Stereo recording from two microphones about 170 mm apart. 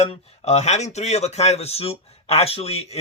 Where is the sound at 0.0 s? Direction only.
35° left (ahead or behind).